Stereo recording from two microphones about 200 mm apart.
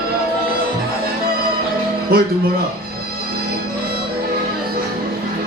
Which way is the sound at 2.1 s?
50° right (ahead or behind).